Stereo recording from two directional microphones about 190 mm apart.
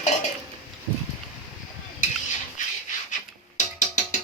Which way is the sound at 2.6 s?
40° left (ahead or behind).